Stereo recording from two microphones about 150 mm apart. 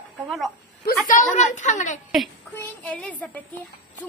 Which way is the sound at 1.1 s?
55° left (ahead or behind).